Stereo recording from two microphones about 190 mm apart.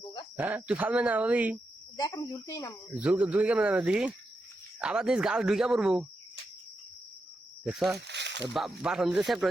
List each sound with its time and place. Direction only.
0.3 s speech: 10° right (ahead or behind)
2.0 s speech: 15° left (ahead or behind)
2.9 s speech: 5° right (ahead or behind)
7.6 s speech: centre (ahead or behind)
7.9 s a sound: 65° right (ahead or behind)
8.5 s speech: centre (ahead or behind)